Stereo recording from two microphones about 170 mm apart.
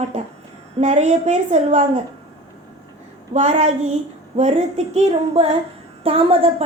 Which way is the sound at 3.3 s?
40° right (ahead or behind).